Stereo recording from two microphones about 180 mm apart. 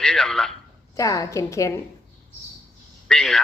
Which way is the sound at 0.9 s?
20° left (ahead or behind).